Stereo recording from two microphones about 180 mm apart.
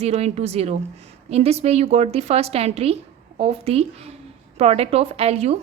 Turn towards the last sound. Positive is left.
turn(degrees=-35)  # may be behind; listen again after turning